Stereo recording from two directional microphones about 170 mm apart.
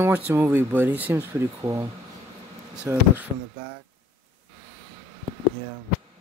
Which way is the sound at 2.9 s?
15° right (ahead or behind).